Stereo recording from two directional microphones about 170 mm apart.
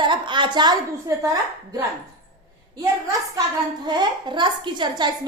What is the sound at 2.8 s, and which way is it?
A woman's voice, 20° right (ahead or behind).